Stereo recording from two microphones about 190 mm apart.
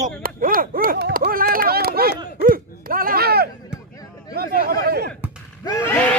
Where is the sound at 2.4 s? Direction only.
50° right (ahead or behind).